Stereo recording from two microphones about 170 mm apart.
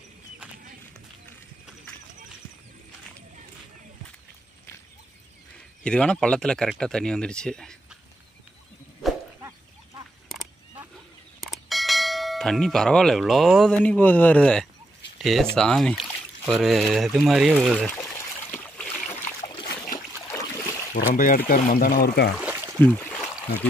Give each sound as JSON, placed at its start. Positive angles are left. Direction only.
{"t": 5.9, "sound": "speech", "side_deg": 5}
{"t": 11.4, "sound": "bell", "side_deg": 0}
{"t": 15.1, "sound": "speech", "side_deg": 0}
{"t": 20.2, "sound": "a sound", "side_deg": 15}
{"t": 20.9, "sound": "speech", "side_deg": 55}
{"t": 22.4, "sound": "a sound", "side_deg": -10}
{"t": 22.8, "sound": "trickle", "side_deg": 10}